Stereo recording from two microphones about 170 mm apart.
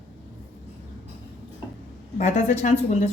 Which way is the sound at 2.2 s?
45° left (ahead or behind).